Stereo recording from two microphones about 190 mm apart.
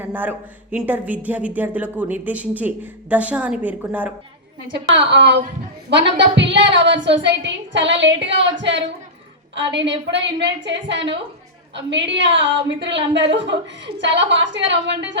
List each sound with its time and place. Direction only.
0.0 s speech: 10° right (ahead or behind)
4.9 s a woman's voice: 65° right (ahead or behind)